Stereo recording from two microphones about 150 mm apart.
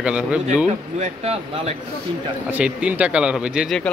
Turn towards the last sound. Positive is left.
turn(degrees=-5)  # may be behind; listen again after turning